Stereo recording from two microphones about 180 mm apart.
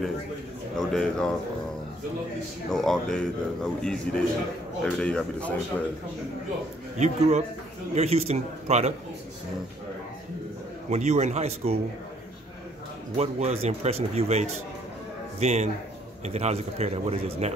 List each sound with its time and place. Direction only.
0.7 s a man's voice: 5° left (ahead or behind)
2.7 s a man's voice: 5° left (ahead or behind)
7.0 s a man's voice: 40° right (ahead or behind)
10.9 s a man's voice: 40° right (ahead or behind)
13.1 s a man's voice: 35° right (ahead or behind)